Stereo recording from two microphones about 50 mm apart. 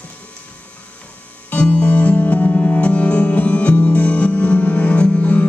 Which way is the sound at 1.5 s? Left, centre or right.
Left.